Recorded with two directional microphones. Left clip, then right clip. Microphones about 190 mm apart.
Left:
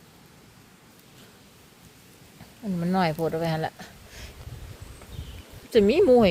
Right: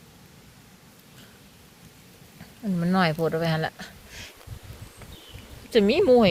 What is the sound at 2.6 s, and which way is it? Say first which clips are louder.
Speech: right 1 dB; centre (ahead or behind).